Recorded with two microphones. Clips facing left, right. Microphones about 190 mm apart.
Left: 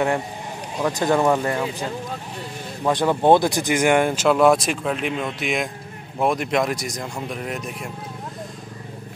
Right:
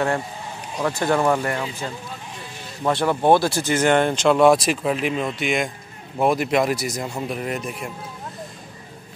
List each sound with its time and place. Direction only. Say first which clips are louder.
0.8 s speech: left 1 dB; 15° left (ahead or behind)
2.9 s speech: left 1 dB; 15° left (ahead or behind); by 7.9 s centre (ahead or behind)